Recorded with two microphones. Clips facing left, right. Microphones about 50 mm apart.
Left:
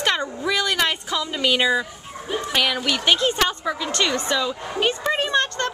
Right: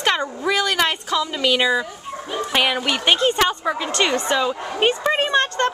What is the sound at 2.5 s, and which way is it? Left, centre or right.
A woman's voice, centre.